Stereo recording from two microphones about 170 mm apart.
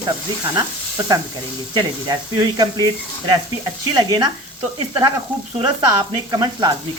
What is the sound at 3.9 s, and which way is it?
Sizzle, 25° right (ahead or behind).